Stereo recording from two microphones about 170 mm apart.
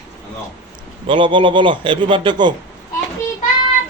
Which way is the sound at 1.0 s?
30° right (ahead or behind).